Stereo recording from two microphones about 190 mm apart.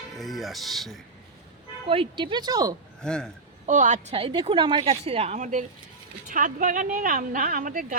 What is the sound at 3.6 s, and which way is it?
A woman's voice, 40° right (ahead or behind).